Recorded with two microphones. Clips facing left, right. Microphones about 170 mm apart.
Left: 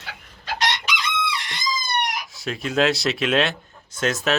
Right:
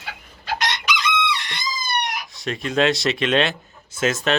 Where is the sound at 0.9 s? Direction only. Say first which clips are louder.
Right 4 dB; 30° left (ahead or behind).